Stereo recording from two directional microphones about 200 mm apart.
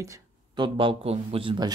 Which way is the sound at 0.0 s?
20° right (ahead or behind).